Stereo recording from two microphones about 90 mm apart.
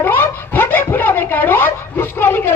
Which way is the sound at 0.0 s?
25° left (ahead or behind).